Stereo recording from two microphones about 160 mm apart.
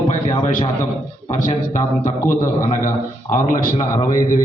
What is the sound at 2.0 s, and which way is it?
Speech, 55° left (ahead or behind).